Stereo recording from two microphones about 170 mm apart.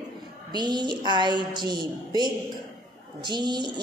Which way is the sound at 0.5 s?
25° right (ahead or behind).